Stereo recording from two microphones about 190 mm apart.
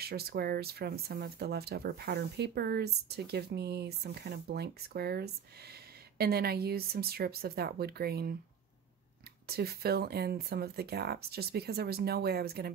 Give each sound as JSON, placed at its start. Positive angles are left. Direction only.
{"t": 0.0, "sound": "speech", "side_deg": -55}
{"t": 9.5, "sound": "speech", "side_deg": -55}